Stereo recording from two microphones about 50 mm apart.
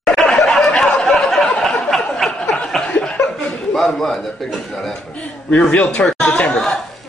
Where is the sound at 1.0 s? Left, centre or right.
Centre.